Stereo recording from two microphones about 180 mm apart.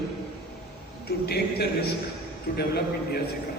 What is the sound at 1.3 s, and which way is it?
A man's voice, 65° left (ahead or behind).